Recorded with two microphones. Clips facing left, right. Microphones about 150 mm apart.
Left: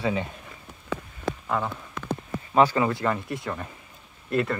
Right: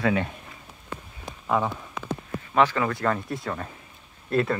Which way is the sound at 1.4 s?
5° right (ahead or behind).